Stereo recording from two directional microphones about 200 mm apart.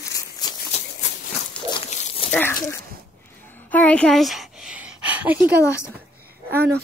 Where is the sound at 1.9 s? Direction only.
35° left (ahead or behind).